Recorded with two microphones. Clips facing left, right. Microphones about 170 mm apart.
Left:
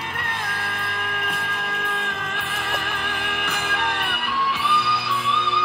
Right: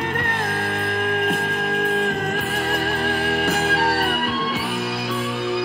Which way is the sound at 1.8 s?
45° right (ahead or behind).